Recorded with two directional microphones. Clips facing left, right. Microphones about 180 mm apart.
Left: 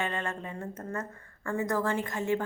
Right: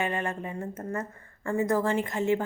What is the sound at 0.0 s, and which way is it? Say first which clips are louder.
A woman's voice: right 3 dB; 20° right (ahead or behind).